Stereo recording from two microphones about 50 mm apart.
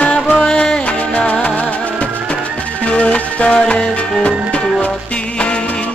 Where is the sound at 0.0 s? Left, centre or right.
Left.